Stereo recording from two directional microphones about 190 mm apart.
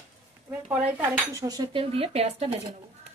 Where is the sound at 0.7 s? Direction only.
10° right (ahead or behind); by 2.5 s 35° right (ahead or behind).